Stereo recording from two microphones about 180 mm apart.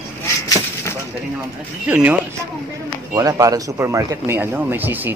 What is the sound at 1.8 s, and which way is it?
Speech, 5° right (ahead or behind).